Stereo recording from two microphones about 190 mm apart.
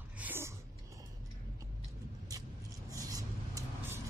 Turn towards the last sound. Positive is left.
turn(degrees=-20)  # may be behind; listen again after turning